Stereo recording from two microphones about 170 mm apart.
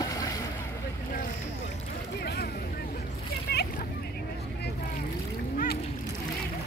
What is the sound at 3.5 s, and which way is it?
Vehicle, 70° left (ahead or behind).